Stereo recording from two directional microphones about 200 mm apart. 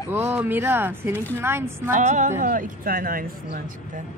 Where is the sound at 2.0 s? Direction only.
40° right (ahead or behind).